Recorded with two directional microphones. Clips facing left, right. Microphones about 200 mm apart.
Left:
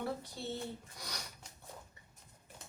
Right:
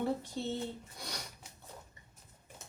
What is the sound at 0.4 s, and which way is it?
Speech, 20° right (ahead or behind).